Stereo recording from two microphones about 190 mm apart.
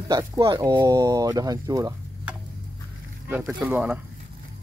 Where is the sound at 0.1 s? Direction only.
15° right (ahead or behind).